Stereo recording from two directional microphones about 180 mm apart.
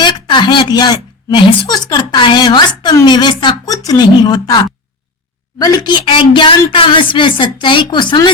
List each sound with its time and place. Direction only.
0.0 s a woman's voice: 25° left (ahead or behind)